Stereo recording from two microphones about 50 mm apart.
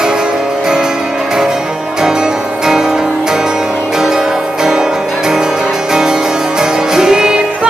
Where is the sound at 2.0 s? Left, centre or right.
Centre.